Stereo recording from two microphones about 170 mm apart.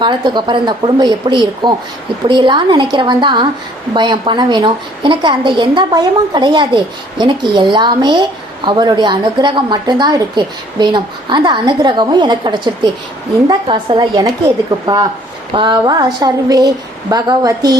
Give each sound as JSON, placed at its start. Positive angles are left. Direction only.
{"t": 0.0, "sound": "a woman's voice", "side_deg": -25}